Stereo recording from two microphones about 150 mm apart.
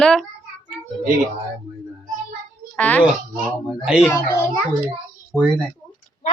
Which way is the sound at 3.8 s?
5° right (ahead or behind).